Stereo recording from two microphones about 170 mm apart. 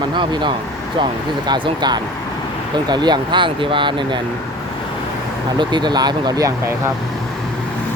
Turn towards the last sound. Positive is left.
turn(degrees=-20)  # may be behind; listen again after turning